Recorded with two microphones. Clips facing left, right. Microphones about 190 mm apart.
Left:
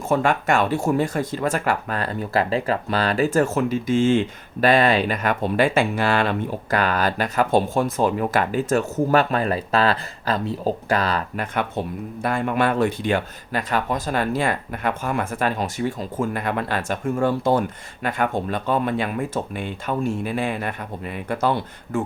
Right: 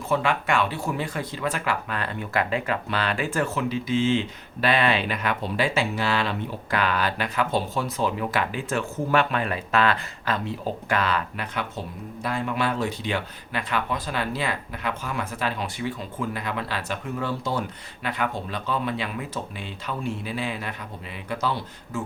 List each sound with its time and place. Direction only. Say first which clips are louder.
0.1 s speech: left 4 dB; 45° left (ahead or behind)